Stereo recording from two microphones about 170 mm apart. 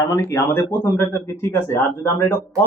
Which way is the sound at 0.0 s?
20° left (ahead or behind).